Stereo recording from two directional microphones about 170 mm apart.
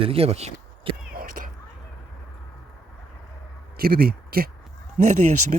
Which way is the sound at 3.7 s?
65° right (ahead or behind).